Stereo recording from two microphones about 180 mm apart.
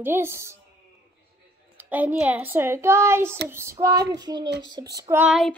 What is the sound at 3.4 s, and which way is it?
Child singing, 15° right (ahead or behind).